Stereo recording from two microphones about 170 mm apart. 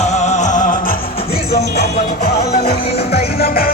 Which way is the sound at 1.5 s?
70° left (ahead or behind).